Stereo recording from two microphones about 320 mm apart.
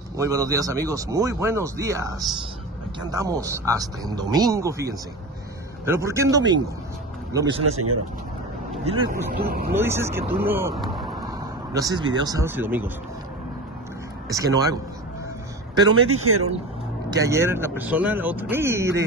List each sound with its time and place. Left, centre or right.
0.2 s speech: centre
5.9 s speech: centre
7.7 s speech: right
8.8 s speech: centre
9.4 s speech: right
9.8 s speech: centre
14.3 s speech: centre
15.9 s speech: right
17.1 s speech: centre